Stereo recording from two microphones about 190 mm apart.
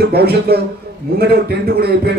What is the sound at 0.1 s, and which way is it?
A man's voice, 55° right (ahead or behind).